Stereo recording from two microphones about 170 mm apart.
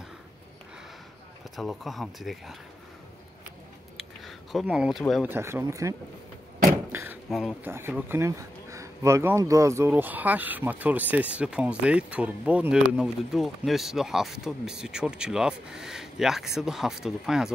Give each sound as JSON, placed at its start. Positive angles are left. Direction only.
{"t": 1.6, "sound": "speech", "side_deg": 0}
{"t": 3.9, "sound": "a sound", "side_deg": 0}
{"t": 5.3, "sound": "speech", "side_deg": -15}
{"t": 6.9, "sound": "door", "side_deg": -15}
{"t": 7.2, "sound": "speech", "side_deg": 0}
{"t": 7.6, "sound": "speech", "side_deg": -10}